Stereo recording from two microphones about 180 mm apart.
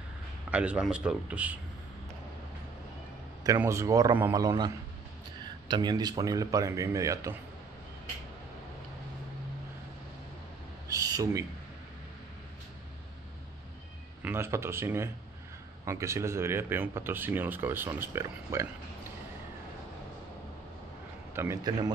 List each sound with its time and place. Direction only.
0.5 s speech: 5° right (ahead or behind)
3.4 s speech: 15° right (ahead or behind)
10.9 s a sound: 20° right (ahead or behind)
14.2 s speech: 15° right (ahead or behind)
21.4 s speech: 20° right (ahead or behind)